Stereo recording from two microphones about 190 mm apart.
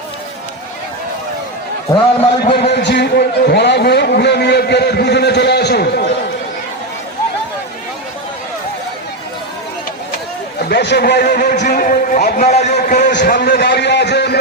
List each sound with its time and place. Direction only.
2.4 s speech: 60° left (ahead or behind)
10.6 s a man's voice: 60° left (ahead or behind); by 13.1 s 40° left (ahead or behind)
13.1 s a sound: 60° left (ahead or behind)